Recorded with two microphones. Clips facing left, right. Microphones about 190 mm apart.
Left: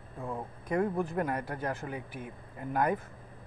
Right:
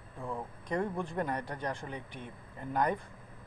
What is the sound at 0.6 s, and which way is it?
A man's voice, 5° left (ahead or behind).